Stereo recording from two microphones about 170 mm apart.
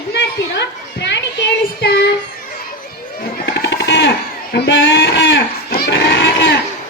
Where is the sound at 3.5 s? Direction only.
90° left.